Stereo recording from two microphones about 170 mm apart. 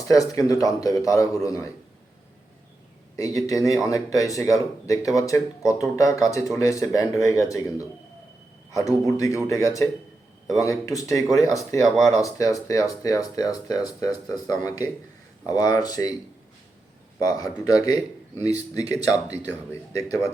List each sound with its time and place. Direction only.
0.0 s speech: 20° left (ahead or behind)
3.2 s speech: 20° left (ahead or behind)
17.2 s speech: 20° left (ahead or behind)
18.8 s speech: 40° right (ahead or behind)
19.5 s speech: 15° left (ahead or behind)